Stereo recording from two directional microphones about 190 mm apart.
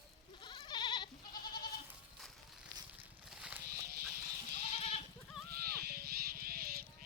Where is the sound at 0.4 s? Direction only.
25° left (ahead or behind).